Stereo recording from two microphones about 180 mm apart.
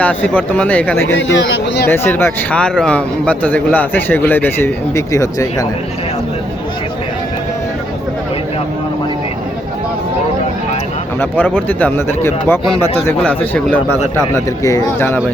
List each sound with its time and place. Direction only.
0.0 s speech: 10° left (ahead or behind)
1.0 s speech: 80° left
1.9 s speech: 10° left (ahead or behind)
11.2 s speech: 10° left (ahead or behind)